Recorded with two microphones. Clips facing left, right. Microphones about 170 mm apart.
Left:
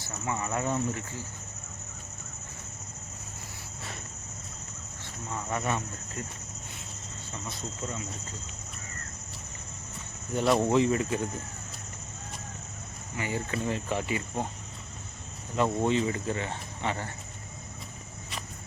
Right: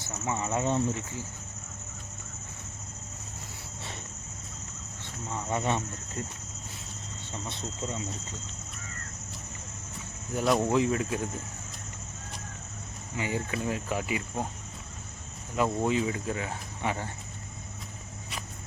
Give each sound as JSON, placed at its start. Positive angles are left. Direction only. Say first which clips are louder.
{"t": 0.3, "sound": "speech", "louder": "right 2 dB", "side_deg": -20}
{"t": 5.3, "sound": "speech", "louder": "right 2 dB", "side_deg": -25}
{"t": 7.5, "sound": "speech", "louder": "right 1 dB", "side_deg": -25}
{"t": 10.3, "sound": "speech", "louder": "left 1 dB", "side_deg": 0}
{"t": 13.1, "sound": "speech", "louder": "right 1 dB", "side_deg": -15}
{"t": 13.7, "sound": "speech", "louder": "left 1 dB", "side_deg": -5}
{"t": 15.5, "sound": "speech", "louder": "left 1 dB", "side_deg": -5}